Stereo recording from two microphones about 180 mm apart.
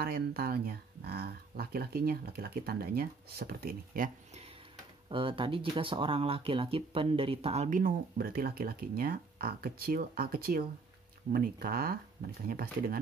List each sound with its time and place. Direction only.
0.0 s speech: 55° right (ahead or behind)
5.1 s speech: 30° right (ahead or behind); by 13.0 s 55° right (ahead or behind)